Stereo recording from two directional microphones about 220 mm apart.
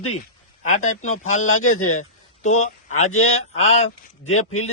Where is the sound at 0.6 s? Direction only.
35° left (ahead or behind).